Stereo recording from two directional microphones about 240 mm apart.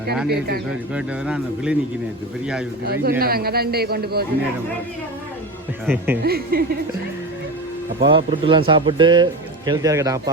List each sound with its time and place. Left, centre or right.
0.3 s a man's voice: right
0.9 s a man's voice: centre
2.8 s a man's voice: right
5.8 s a man's voice: centre
6.2 s a man's voice: right
8.0 s speech: right